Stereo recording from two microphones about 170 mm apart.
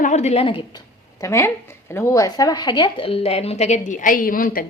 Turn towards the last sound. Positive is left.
turn(degrees=55)  # may be behind; listen again after turning